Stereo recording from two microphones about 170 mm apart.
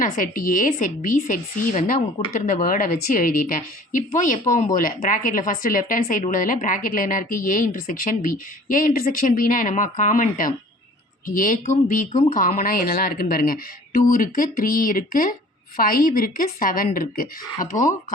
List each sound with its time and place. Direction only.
0.0 s speech: 55° left (ahead or behind)